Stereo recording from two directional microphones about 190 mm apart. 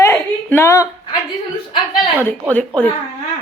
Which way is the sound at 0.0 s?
15° left (ahead or behind).